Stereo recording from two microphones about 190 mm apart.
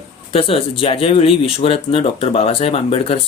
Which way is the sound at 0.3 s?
30° left (ahead or behind).